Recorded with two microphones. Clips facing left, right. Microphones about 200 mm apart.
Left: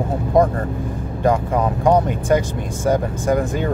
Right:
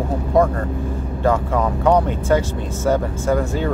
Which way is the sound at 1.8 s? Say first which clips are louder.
Even; 10° left (ahead or behind).